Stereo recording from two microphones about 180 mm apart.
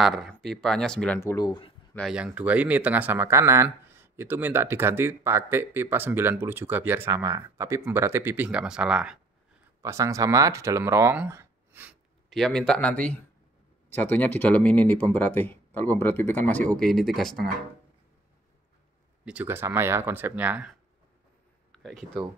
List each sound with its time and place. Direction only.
0.0 s speech: centre (ahead or behind)
1.2 s speech: 20° left (ahead or behind)
2.0 s speech: centre (ahead or behind)
9.8 s speech: 15° right (ahead or behind)
12.3 s speech: 5° left (ahead or behind)
19.2 s speech: 10° right (ahead or behind)
21.7 s speech: centre (ahead or behind)